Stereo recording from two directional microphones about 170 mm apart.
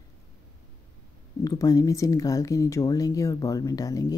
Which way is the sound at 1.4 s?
20° left (ahead or behind).